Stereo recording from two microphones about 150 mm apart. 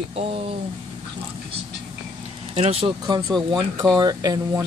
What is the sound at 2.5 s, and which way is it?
Speech, 40° right (ahead or behind).